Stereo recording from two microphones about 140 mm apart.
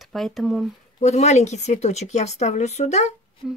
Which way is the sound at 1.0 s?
55° left (ahead or behind).